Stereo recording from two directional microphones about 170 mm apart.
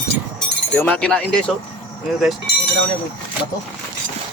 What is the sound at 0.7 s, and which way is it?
Speech, 10° left (ahead or behind).